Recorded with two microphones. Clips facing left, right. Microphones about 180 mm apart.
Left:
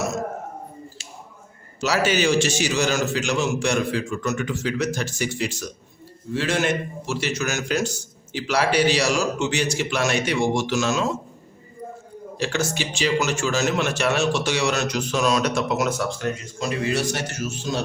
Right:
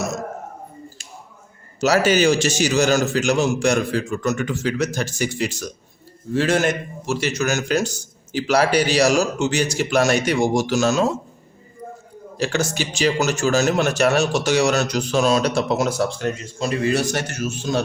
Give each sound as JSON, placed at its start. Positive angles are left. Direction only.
{"t": 1.8, "sound": "a man's voice", "side_deg": -45}
{"t": 12.4, "sound": "a man's voice", "side_deg": -40}